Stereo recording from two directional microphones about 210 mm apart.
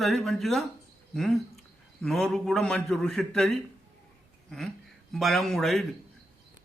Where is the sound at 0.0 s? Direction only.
Centre (ahead or behind).